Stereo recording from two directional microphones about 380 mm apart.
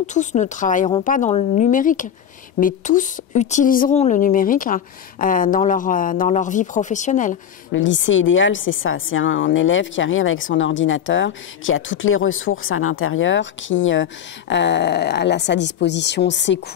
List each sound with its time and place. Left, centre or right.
0.0 s a woman's voice: centre
7.7 s a woman's voice: left